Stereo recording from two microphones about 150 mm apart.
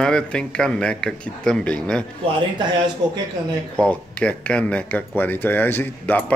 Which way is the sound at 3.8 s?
10° left (ahead or behind).